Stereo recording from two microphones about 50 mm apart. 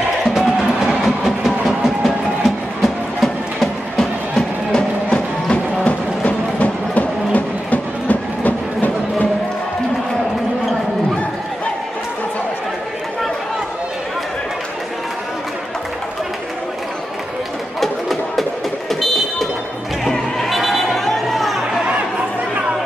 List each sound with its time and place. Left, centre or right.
0.3 s music: centre; by 9.3 s left
17.7 s music: centre
18.9 s vehicle: centre
20.1 s chatter: centre